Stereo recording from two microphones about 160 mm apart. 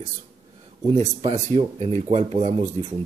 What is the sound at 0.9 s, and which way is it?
Speech, 45° right (ahead or behind).